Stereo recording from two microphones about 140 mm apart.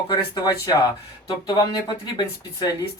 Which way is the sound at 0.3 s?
25° left (ahead or behind).